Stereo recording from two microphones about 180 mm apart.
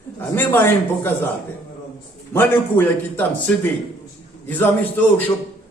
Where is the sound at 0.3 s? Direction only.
10° left (ahead or behind).